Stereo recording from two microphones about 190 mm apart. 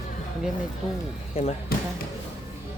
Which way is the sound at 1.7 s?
50° left (ahead or behind).